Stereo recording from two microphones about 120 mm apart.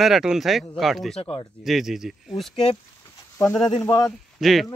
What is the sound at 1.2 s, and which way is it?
Speech, 55° left (ahead or behind).